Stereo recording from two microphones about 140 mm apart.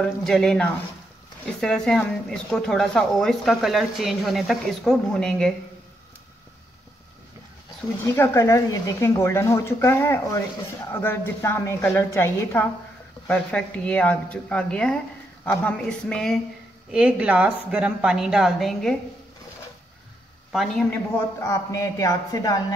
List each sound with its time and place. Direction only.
0.0 s a woman's voice: 5° left (ahead or behind)
8.0 s a woman's voice: 20° left (ahead or behind)
13.3 s a woman's voice: 10° left (ahead or behind)
16.9 s a woman's voice: 5° right (ahead or behind)
20.5 s a woman's voice: centre (ahead or behind)
21.4 s speech: 20° left (ahead or behind)